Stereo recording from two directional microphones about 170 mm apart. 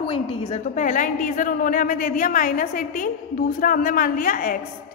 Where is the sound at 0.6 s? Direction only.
50° left (ahead or behind).